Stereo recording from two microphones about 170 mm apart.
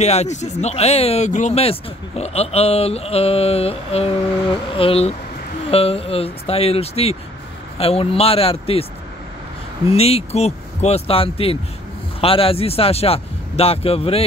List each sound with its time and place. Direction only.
0.0 s speech: 40° left (ahead or behind)
9.9 s speech: 35° left (ahead or behind)